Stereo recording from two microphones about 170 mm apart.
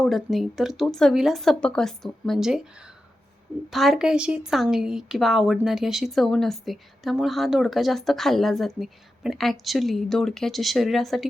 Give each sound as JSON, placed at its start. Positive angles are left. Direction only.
{"t": 0.0, "sound": "a woman's voice", "side_deg": 0}